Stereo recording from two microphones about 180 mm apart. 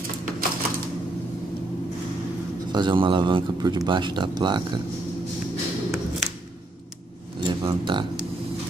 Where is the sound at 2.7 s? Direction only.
25° right (ahead or behind).